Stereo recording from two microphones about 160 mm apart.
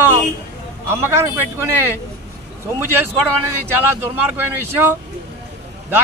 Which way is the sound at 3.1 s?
10° right (ahead or behind).